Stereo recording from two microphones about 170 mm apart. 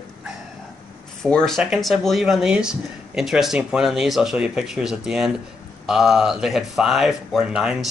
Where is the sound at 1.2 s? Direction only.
5° left (ahead or behind).